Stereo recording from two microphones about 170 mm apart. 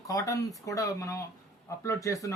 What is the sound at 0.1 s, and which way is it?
A man's voice, 20° left (ahead or behind).